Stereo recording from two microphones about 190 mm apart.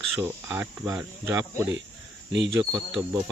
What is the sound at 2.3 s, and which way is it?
Speech, 70° right (ahead or behind).